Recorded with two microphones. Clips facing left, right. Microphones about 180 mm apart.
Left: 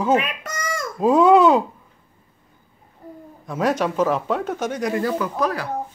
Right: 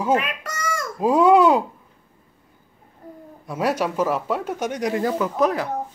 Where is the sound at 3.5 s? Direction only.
10° right (ahead or behind).